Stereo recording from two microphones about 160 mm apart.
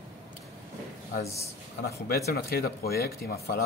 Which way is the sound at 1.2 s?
20° left (ahead or behind).